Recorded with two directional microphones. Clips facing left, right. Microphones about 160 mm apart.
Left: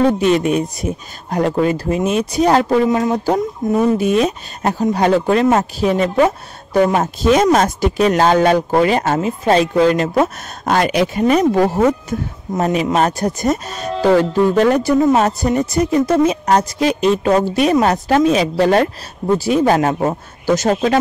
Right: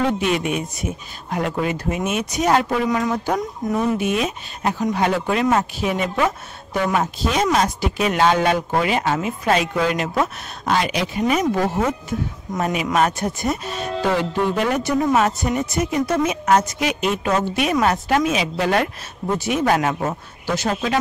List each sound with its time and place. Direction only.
0.0 s speech: 40° left (ahead or behind)
9.4 s speech: 30° left (ahead or behind)